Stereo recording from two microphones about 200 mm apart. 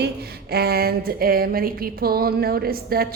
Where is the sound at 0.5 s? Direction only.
50° right (ahead or behind).